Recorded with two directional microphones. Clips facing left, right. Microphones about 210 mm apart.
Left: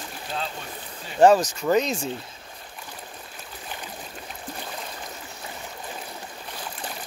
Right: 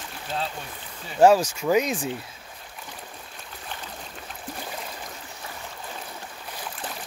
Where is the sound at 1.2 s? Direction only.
10° right (ahead or behind).